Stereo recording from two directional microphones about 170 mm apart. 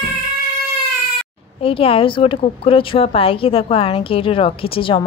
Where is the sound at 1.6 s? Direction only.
35° left (ahead or behind).